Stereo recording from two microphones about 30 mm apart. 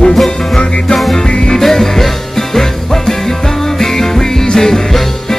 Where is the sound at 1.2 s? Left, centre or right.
Left.